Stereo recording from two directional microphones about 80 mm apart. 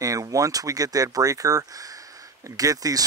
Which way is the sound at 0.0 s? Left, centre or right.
Right.